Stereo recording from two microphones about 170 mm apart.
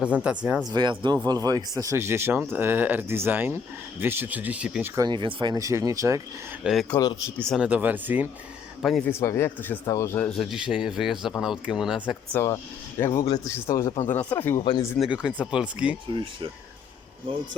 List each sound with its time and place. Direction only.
0.2 s speech: 5° right (ahead or behind)
0.7 s speech: 25° right (ahead or behind); by 4.9 s 5° right (ahead or behind)
4.9 s speech: 25° right (ahead or behind)
6.6 s speech: 5° right (ahead or behind)
7.0 s speech: 25° left (ahead or behind)
7.3 s speech: 5° left (ahead or behind)
7.6 s speech: 10° right (ahead or behind)
9.0 s speech: 15° left (ahead or behind)
10.3 s speech: centre (ahead or behind)
12.3 s speech: 15° left (ahead or behind)
14.6 s speech: 25° left (ahead or behind)
14.9 s speech: 5° right (ahead or behind)